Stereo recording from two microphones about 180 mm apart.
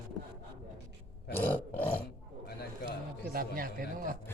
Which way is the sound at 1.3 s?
10° left (ahead or behind).